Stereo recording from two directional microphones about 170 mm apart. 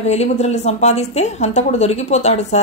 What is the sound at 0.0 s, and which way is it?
A woman's voice, 40° left (ahead or behind).